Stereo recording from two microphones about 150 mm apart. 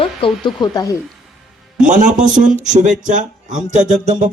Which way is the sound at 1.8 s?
60° right (ahead or behind).